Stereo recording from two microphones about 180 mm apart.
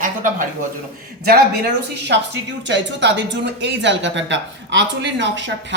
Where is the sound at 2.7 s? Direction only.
75° right (ahead or behind).